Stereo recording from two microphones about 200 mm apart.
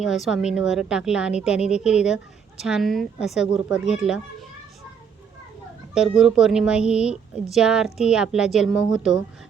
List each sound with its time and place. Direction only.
0.0 s speech: centre (ahead or behind)
5.9 s speech: 5° right (ahead or behind)